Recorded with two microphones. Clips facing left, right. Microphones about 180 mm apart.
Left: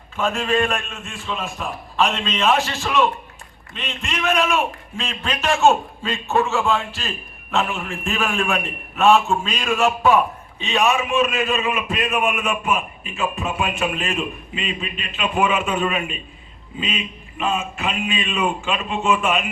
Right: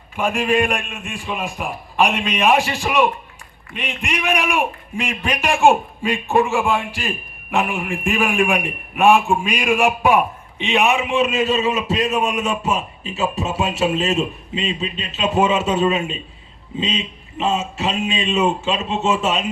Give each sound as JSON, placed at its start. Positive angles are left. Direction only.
{"t": 0.2, "sound": "a man's voice", "side_deg": -15}